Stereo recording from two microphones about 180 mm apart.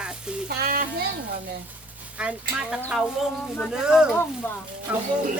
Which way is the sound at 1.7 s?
10° right (ahead or behind).